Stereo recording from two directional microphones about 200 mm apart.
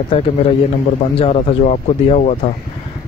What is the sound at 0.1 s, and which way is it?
Speech, 30° left (ahead or behind).